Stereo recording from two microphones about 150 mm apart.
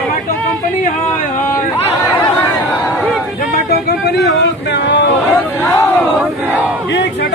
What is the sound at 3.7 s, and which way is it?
Speech, 90° left.